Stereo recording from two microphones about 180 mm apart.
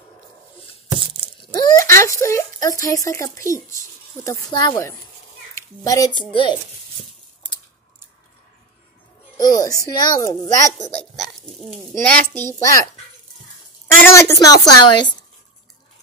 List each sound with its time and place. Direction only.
0.9 s a sound: 30° right (ahead or behind)
1.4 s a sound: 20° left (ahead or behind)
4.2 s a child's voice: 20° left (ahead or behind)
9.4 s a child's voice: 20° left (ahead or behind)
11.0 s a child's voice: centre (ahead or behind); by 12.8 s 15° left (ahead or behind)
14.0 s a child's voice: 15° left (ahead or behind)